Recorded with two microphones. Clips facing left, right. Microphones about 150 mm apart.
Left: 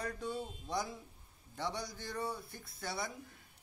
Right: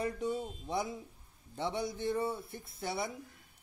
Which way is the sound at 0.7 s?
20° right (ahead or behind).